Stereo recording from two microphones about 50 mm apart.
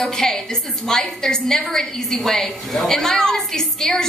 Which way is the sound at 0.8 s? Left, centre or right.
Centre.